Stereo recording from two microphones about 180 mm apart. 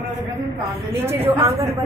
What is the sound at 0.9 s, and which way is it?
Speech, 10° right (ahead or behind).